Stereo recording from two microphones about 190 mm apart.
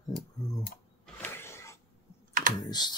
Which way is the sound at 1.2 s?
10° left (ahead or behind).